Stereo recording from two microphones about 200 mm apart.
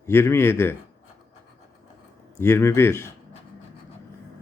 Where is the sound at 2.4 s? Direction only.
10° left (ahead or behind).